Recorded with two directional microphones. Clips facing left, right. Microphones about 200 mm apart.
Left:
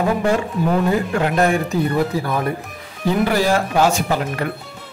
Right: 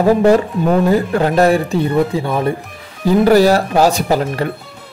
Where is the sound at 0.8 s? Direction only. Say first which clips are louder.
Right 5 dB; 35° right (ahead or behind).